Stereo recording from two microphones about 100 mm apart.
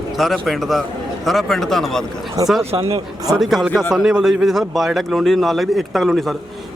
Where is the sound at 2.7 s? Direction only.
75° right (ahead or behind).